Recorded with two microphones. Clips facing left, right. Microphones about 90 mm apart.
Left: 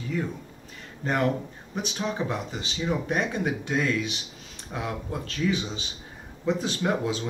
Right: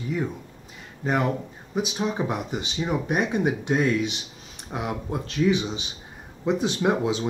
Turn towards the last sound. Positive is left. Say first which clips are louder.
# right 4 dB
turn(degrees=-20)  # may be behind; listen again after turning